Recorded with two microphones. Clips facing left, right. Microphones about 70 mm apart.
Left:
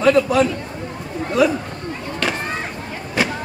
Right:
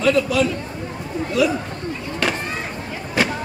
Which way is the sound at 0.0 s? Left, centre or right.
Left.